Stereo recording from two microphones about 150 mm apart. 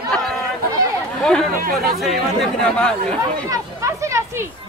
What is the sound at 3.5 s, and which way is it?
Chatter, 20° right (ahead or behind).